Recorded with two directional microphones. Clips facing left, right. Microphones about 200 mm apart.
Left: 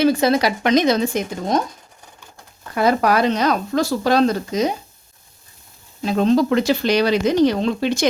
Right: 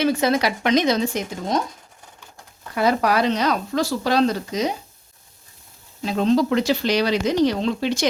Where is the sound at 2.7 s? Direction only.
50° left (ahead or behind).